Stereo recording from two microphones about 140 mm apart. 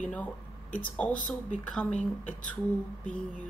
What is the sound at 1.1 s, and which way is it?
Speech, 70° left (ahead or behind).